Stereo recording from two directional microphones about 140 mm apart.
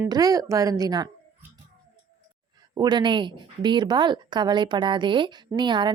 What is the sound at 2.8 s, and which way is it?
Speech, 30° right (ahead or behind).